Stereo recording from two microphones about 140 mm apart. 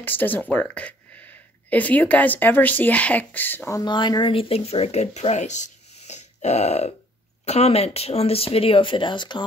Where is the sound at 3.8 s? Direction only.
35° left (ahead or behind).